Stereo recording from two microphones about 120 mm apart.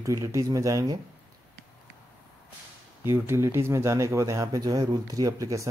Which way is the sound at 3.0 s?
20° right (ahead or behind).